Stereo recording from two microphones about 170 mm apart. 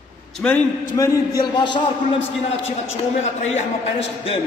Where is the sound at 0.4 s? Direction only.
10° left (ahead or behind).